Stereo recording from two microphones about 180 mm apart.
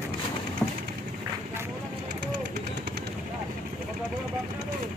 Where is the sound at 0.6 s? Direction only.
10° left (ahead or behind).